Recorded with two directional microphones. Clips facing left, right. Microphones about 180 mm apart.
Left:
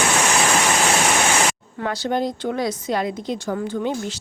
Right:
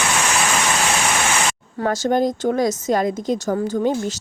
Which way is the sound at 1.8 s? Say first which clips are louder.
Right 4 dB; 45° right (ahead or behind).